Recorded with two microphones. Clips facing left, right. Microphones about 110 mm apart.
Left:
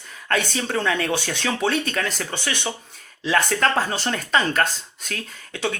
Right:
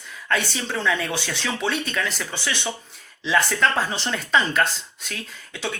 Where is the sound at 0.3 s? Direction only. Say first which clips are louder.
Left 2 dB; 50° left (ahead or behind).